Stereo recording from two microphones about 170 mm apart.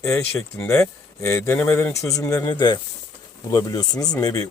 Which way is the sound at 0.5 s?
15° left (ahead or behind).